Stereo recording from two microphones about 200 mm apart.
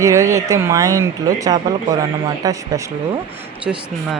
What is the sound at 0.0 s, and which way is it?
Speech, 15° right (ahead or behind).